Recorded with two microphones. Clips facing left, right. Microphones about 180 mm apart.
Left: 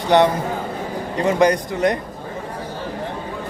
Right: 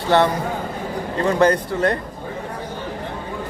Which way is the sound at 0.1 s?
15° left (ahead or behind).